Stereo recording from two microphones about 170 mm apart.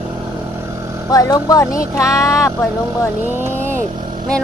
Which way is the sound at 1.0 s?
20° left (ahead or behind).